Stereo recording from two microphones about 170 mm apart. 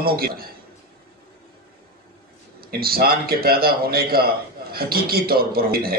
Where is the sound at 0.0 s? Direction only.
65° right (ahead or behind).